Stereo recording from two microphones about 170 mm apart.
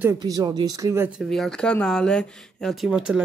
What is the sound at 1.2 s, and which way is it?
Speech, centre (ahead or behind).